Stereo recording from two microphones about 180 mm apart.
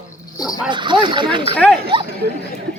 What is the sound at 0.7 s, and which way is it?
Speech, 25° right (ahead or behind).